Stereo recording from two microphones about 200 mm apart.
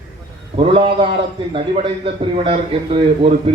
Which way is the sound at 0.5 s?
25° right (ahead or behind).